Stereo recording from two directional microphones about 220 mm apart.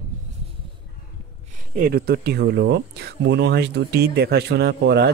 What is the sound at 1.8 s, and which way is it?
A man's voice, 45° right (ahead or behind).